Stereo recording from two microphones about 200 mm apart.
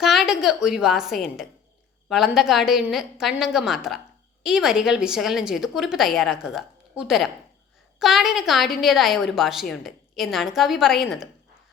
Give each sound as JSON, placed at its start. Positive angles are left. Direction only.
{"t": 0.0, "sound": "a woman's voice", "side_deg": 0}